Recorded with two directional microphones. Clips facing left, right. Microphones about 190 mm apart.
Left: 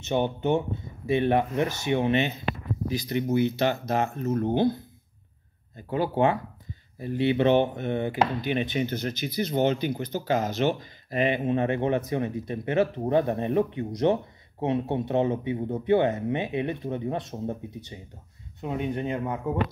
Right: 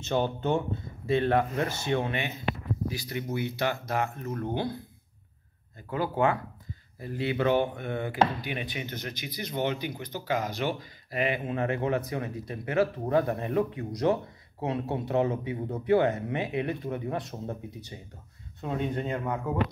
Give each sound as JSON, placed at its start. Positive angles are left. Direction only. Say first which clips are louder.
{"t": 0.0, "sound": "speech", "louder": "left 2 dB", "side_deg": 20}
{"t": 5.8, "sound": "speech", "louder": "left 3 dB", "side_deg": 25}